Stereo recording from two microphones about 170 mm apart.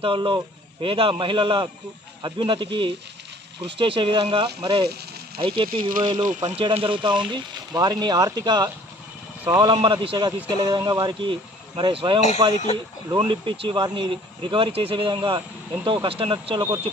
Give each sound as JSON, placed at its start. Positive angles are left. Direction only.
{"t": 0.0, "sound": "speech", "side_deg": -30}
{"t": 5.7, "sound": "speech", "side_deg": -55}
{"t": 6.0, "sound": "speech", "side_deg": -25}
{"t": 9.8, "sound": "speech", "side_deg": -30}